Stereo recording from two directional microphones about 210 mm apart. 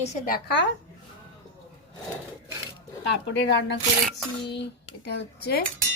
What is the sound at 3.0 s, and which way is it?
Speech, 55° left (ahead or behind).